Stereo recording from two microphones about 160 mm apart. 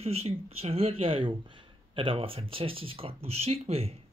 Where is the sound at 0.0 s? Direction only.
40° right (ahead or behind).